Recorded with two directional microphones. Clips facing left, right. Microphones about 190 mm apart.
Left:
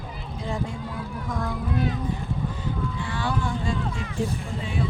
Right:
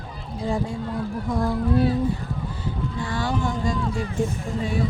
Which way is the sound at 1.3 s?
35° right (ahead or behind).